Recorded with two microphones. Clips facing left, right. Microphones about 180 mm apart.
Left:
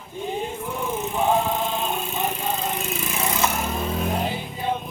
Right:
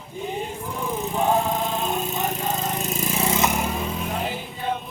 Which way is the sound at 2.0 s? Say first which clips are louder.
Right 1 dB; 40° right (ahead or behind).